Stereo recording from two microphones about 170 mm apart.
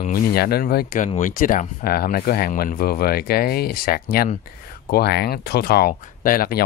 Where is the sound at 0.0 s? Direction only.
60° left (ahead or behind).